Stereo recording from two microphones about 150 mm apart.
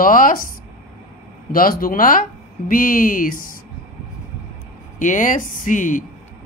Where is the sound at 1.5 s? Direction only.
70° left (ahead or behind).